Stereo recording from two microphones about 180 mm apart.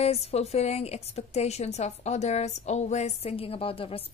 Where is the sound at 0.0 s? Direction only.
35° left (ahead or behind).